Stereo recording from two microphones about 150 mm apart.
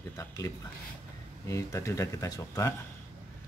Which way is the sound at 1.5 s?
20° left (ahead or behind).